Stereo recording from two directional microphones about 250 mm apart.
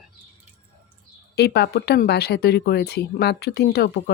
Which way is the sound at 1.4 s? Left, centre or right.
Left.